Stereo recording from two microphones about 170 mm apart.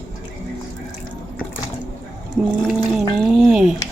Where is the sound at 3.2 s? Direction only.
Centre (ahead or behind).